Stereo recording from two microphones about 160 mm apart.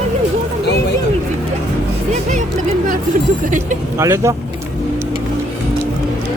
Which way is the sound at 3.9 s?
20° right (ahead or behind).